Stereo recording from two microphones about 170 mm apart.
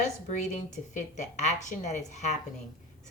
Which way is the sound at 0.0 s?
45° left (ahead or behind).